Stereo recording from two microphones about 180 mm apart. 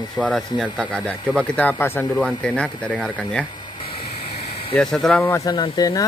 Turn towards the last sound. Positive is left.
turn(degrees=20)  # may be behind; listen again after turning